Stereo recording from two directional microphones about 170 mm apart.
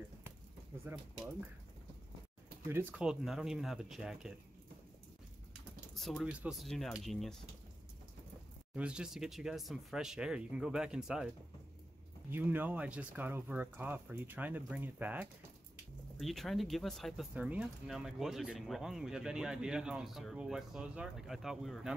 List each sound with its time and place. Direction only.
0.9 s speech: 15° right (ahead or behind)
2.7 s speech: 10° right (ahead or behind)
5.9 s speech: centre (ahead or behind)
8.7 s speech: 5° right (ahead or behind)
12.3 s speech: 10° right (ahead or behind)
16.2 s speech: centre (ahead or behind)